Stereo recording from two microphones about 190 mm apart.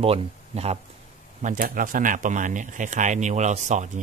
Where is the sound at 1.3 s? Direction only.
45° right (ahead or behind).